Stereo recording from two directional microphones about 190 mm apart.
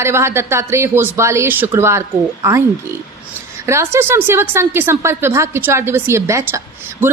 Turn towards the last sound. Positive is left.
turn(degrees=-15)  # may be behind; listen again after turning